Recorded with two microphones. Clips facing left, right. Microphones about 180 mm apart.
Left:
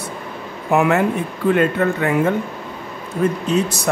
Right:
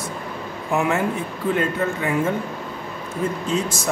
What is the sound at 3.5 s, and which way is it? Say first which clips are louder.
Speech: left 4 dB; 65° left (ahead or behind).